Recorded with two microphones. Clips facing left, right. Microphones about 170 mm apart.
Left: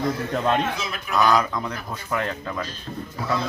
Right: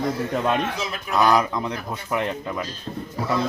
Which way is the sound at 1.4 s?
20° right (ahead or behind).